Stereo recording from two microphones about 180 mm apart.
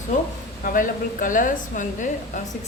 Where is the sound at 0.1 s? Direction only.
45° left (ahead or behind).